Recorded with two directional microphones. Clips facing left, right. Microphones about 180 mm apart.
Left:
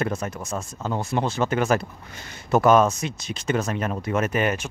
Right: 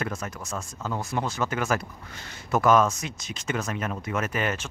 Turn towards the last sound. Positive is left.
turn(degrees=20)  # may be behind; listen again after turning